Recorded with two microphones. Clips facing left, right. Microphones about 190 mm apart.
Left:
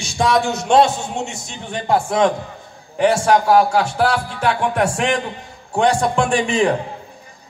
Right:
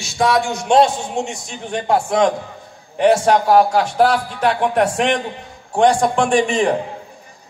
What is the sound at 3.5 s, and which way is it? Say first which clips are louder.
Speech: right 2 dB; 40° right (ahead or behind).